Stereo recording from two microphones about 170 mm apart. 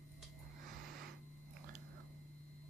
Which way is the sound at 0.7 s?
60° right (ahead or behind).